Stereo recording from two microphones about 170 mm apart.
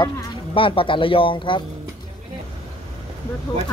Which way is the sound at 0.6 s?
30° left (ahead or behind).